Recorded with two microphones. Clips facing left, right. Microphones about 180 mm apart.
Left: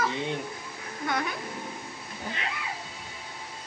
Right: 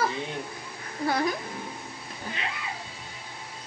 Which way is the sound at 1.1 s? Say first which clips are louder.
Right 4 dB; 30° right (ahead or behind).